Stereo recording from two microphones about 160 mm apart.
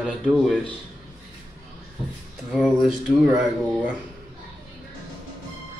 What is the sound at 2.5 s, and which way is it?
Speech, 5° right (ahead or behind).